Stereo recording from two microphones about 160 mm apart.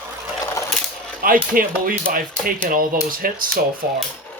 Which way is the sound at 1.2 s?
60° right (ahead or behind).